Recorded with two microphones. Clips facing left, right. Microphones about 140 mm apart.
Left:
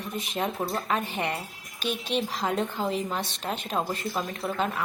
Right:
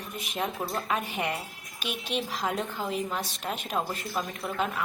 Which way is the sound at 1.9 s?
35° left (ahead or behind).